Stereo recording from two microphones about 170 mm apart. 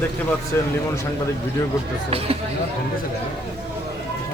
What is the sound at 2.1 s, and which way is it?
Speech, 35° right (ahead or behind).